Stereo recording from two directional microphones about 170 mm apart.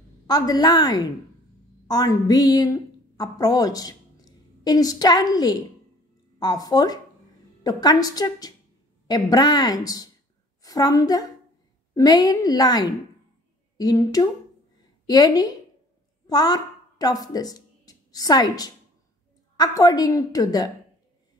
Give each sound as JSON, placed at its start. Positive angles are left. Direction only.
{"t": 0.3, "sound": "a woman's voice", "side_deg": 20}